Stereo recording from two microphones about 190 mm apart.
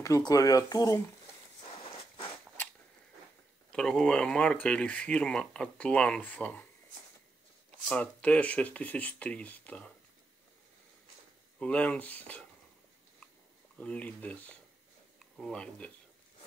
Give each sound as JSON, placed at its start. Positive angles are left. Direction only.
{"t": 0.0, "sound": "speech", "side_deg": 20}
{"t": 1.8, "sound": "a sound", "side_deg": 30}
{"t": 3.7, "sound": "speech", "side_deg": 5}
{"t": 7.9, "sound": "speech", "side_deg": 5}
{"t": 11.6, "sound": "speech", "side_deg": 5}
{"t": 13.7, "sound": "speech", "side_deg": 5}